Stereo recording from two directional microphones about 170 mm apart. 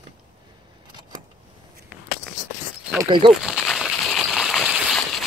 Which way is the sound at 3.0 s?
25° right (ahead or behind).